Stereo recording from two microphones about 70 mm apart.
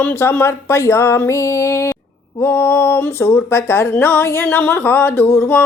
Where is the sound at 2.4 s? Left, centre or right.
Left.